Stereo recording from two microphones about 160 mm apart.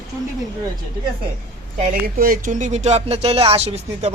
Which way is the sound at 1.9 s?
65° right (ahead or behind).